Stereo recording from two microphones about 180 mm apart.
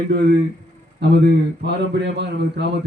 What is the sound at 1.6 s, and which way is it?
A man's voice, 70° right (ahead or behind).